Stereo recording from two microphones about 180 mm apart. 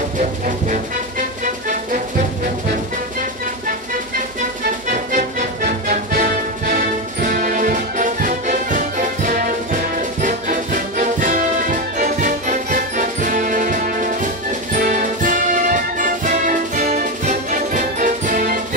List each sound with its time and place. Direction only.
1.4 s music: 45° right (ahead or behind)
4.8 s music: 45° right (ahead or behind)